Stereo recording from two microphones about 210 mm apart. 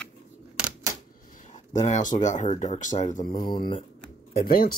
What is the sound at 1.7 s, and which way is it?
Speech, 35° left (ahead or behind).